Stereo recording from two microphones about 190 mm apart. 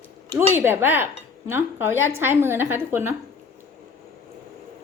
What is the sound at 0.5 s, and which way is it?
A woman's voice, 10° right (ahead or behind).